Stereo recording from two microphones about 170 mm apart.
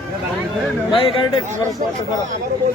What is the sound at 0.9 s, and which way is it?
Speech, 30° left (ahead or behind).